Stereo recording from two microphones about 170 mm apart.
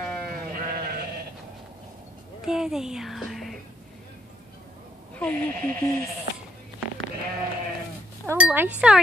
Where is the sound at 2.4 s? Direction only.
5° right (ahead or behind).